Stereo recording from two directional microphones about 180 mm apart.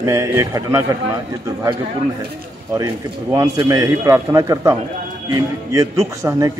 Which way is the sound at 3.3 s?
20° right (ahead or behind).